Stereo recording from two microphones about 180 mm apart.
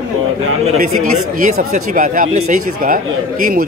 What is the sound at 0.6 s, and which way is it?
Speech, 40° right (ahead or behind).